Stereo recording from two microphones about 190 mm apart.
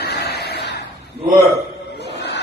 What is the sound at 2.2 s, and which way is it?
Crowd, 60° left (ahead or behind).